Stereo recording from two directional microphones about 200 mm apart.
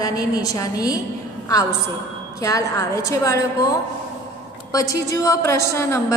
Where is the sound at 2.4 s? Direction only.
15° left (ahead or behind).